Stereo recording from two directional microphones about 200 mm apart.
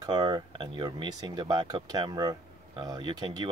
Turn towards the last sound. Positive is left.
turn(degrees=-20)  # may be behind; listen again after turning